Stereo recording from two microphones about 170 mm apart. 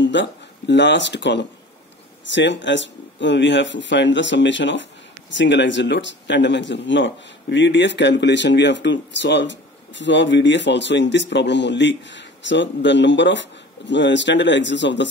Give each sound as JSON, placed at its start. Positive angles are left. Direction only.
{"t": 0.0, "sound": "speech", "side_deg": 90}